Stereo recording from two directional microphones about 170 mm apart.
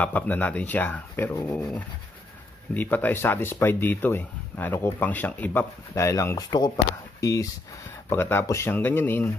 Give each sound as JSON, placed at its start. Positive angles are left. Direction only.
{"t": 0.0, "sound": "speech", "side_deg": 10}
{"t": 2.7, "sound": "speech", "side_deg": 10}